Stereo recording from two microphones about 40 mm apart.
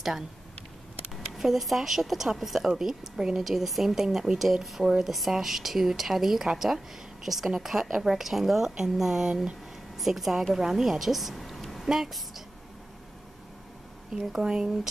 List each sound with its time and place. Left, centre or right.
1.4 s a woman's voice: centre
14.1 s speech: centre